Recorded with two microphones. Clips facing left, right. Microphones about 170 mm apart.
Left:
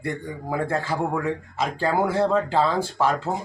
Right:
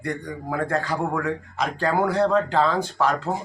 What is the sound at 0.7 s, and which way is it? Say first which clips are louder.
Speech: right 1 dB; 5° left (ahead or behind).